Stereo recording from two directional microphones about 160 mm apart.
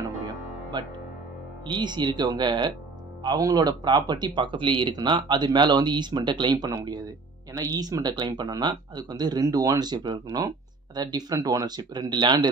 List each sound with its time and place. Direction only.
0.7 s speech: 30° right (ahead or behind)